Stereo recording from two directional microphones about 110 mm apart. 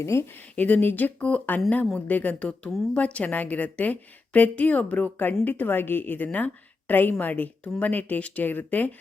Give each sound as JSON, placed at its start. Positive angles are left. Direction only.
{"t": 0.0, "sound": "speech", "side_deg": 25}
{"t": 0.5, "sound": "a woman's voice", "side_deg": 15}